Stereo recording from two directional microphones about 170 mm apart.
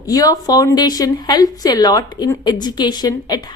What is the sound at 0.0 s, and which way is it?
A woman's voice, 20° left (ahead or behind).